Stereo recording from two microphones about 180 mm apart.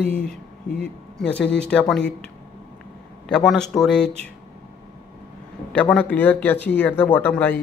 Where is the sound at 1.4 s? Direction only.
70° left (ahead or behind).